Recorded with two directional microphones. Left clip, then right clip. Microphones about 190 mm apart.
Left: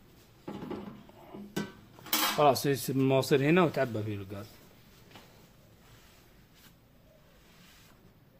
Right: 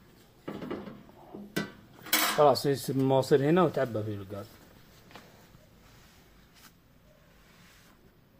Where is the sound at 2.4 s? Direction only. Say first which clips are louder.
Right 2 dB; 40° left (ahead or behind).